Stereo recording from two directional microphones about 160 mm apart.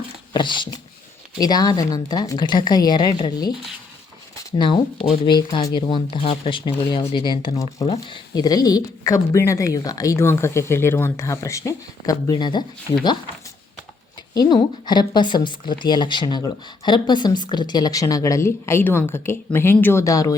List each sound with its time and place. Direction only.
0.3 s speech: 30° left (ahead or behind)
4.5 s speech: 30° left (ahead or behind)
7.5 s speech: 20° left (ahead or behind)
7.9 s speech: 30° left (ahead or behind)
14.3 s speech: 25° left (ahead or behind)